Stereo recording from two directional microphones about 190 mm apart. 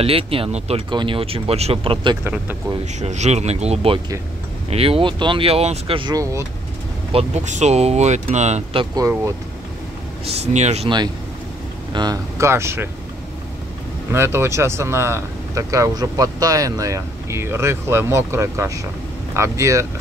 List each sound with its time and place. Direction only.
0.0 s speech: 30° right (ahead or behind)
7.1 s speech: 35° right (ahead or behind)
10.2 s speech: 35° right (ahead or behind)
11.9 s speech: 20° right (ahead or behind)
14.1 s speech: 15° right (ahead or behind)